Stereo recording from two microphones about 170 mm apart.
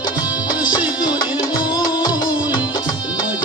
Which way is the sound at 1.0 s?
25° left (ahead or behind).